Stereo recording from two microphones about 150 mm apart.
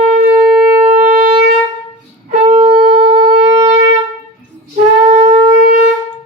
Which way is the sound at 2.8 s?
45° right (ahead or behind).